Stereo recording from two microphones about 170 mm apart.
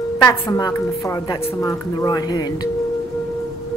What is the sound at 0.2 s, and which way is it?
Tuning fork, 20° left (ahead or behind).